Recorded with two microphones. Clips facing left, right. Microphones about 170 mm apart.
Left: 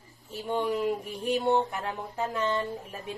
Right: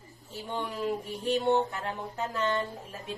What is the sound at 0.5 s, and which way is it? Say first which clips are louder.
A woman's voice: left 4 dB; 20° left (ahead or behind).